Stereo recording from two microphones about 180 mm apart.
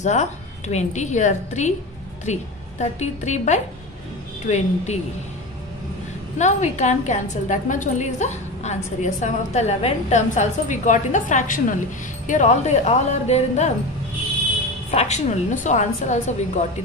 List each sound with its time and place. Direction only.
0.0 s a woman's voice: 40° left (ahead or behind)
6.3 s a woman's voice: 40° left (ahead or behind)
14.9 s a woman's voice: 40° left (ahead or behind)